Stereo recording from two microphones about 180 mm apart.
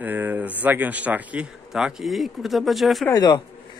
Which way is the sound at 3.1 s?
20° left (ahead or behind).